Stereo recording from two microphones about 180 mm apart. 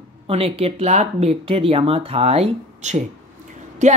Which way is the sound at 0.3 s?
35° right (ahead or behind).